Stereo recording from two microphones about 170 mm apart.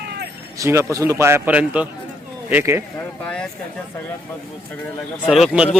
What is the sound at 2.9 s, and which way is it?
Speech, 5° left (ahead or behind).